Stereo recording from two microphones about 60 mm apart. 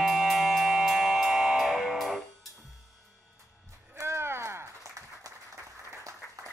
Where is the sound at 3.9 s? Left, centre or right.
Right.